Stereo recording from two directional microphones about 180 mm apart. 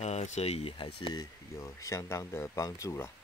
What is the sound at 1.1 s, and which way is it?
Speech, 20° left (ahead or behind).